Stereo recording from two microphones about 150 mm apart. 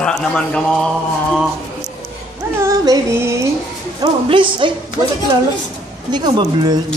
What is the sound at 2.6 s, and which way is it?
Music, 20° right (ahead or behind).